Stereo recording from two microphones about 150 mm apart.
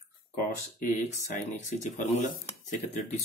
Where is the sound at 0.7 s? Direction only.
55° left (ahead or behind).